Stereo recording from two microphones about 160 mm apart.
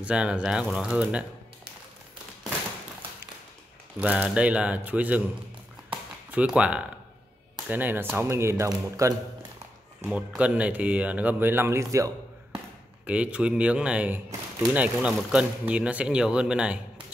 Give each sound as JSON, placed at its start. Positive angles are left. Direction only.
{"t": 0.0, "sound": "speech", "side_deg": -5}
{"t": 4.0, "sound": "speech", "side_deg": -10}
{"t": 6.3, "sound": "speech", "side_deg": -5}
{"t": 10.0, "sound": "speech", "side_deg": -5}
{"t": 13.0, "sound": "speech", "side_deg": -10}